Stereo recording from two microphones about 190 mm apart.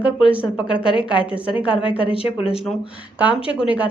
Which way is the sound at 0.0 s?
5° right (ahead or behind).